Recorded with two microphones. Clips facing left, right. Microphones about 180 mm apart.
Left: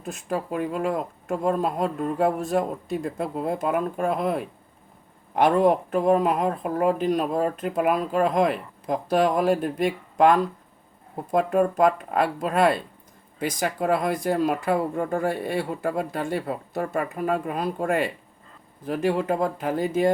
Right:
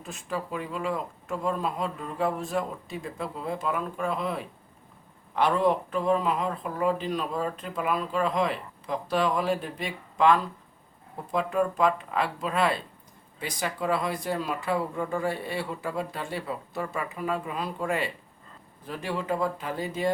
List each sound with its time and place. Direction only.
0.0 s speech: 50° left (ahead or behind)